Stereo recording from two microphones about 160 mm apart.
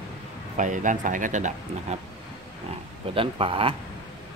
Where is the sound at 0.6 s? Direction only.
50° right (ahead or behind).